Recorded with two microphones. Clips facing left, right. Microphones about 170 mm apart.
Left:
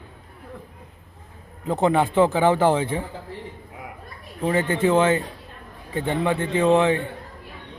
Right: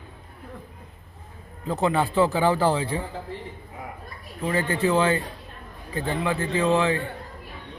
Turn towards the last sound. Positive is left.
turn(degrees=25)  # may be behind; listen again after turning